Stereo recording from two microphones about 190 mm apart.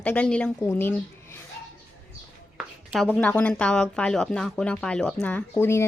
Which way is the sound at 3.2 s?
10° left (ahead or behind).